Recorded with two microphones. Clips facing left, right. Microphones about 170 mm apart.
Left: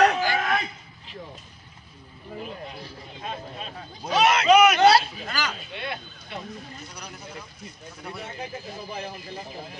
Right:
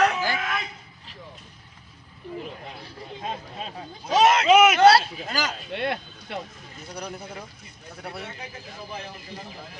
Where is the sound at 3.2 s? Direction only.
30° right (ahead or behind).